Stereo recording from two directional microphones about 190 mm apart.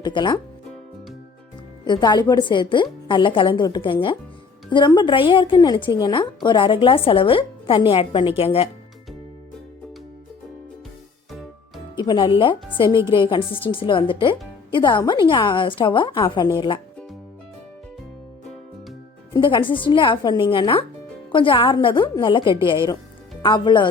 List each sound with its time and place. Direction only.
0.0 s a woman's voice: 25° left (ahead or behind)
1.8 s a woman's voice: 25° left (ahead or behind)
11.9 s a woman's voice: 20° left (ahead or behind)
19.3 s a woman's voice: 25° left (ahead or behind)